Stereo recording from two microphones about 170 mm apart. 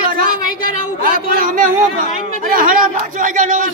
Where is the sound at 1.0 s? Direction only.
55° right (ahead or behind).